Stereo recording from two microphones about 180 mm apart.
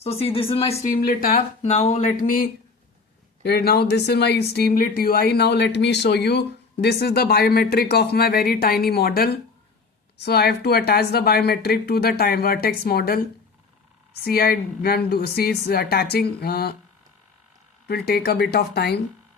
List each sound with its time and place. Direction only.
0.0 s speech: 35° left (ahead or behind)
0.9 s speech: 55° left (ahead or behind)
1.4 s speech: 40° left (ahead or behind)
3.4 s a woman's voice: 60° left (ahead or behind)
14.3 s a woman's voice: 55° left (ahead or behind)
17.8 s a woman's voice: 60° left (ahead or behind)